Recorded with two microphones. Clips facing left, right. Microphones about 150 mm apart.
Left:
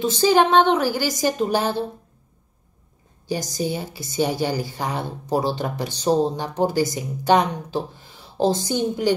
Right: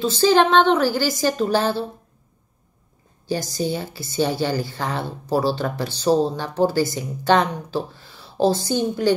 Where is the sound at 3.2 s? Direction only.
15° left (ahead or behind).